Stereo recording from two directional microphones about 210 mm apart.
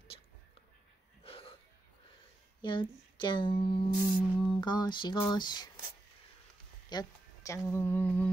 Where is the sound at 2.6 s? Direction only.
20° left (ahead or behind).